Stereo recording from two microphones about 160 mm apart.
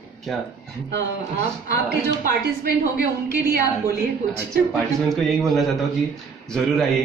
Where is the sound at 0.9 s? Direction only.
90° right.